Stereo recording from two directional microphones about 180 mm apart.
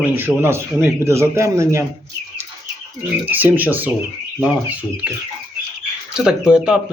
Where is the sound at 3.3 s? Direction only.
10° right (ahead or behind).